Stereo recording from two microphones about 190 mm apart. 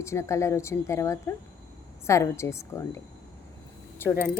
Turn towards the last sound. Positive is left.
turn(degrees=10)  # may be behind; listen again after turning